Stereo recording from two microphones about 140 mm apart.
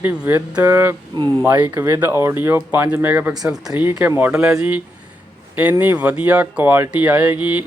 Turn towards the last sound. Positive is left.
turn(degrees=-10)  # may be behind; listen again after turning